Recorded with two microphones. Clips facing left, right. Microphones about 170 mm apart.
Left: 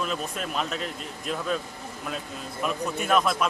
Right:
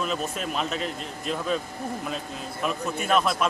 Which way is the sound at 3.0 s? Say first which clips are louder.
Even; centre (ahead or behind).